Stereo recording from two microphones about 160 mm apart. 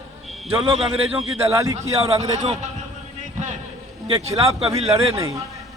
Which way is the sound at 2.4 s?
45° right (ahead or behind).